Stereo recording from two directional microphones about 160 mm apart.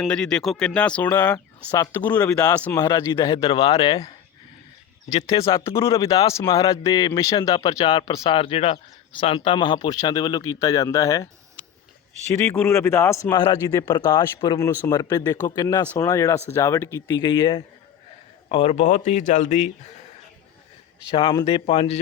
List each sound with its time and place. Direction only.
0.0 s speech: 5° left (ahead or behind); by 4.1 s 35° left (ahead or behind)
5.5 s speech: 15° left (ahead or behind)
5.9 s speech: 35° left (ahead or behind)
6.2 s speech: 20° left (ahead or behind)
11.6 s a sound: 10° left (ahead or behind)
12.3 s speech: 15° left (ahead or behind)
14.7 s speech: 10° left (ahead or behind)
14.9 s speech: 25° left (ahead or behind)
17.2 s speech: 30° left (ahead or behind); by 19.7 s 50° left (ahead or behind)
21.1 s speech: 30° left (ahead or behind)